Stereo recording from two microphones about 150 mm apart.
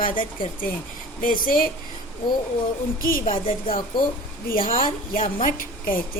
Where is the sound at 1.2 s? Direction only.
70° left (ahead or behind).